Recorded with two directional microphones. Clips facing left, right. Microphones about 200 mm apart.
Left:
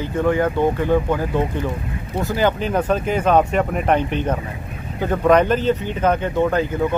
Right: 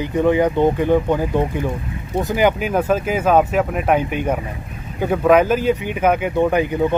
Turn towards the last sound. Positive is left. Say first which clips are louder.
# right 2 dB
turn(degrees=-15)  # may be behind; listen again after turning